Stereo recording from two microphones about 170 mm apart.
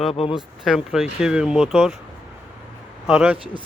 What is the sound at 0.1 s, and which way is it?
Speech, 35° left (ahead or behind).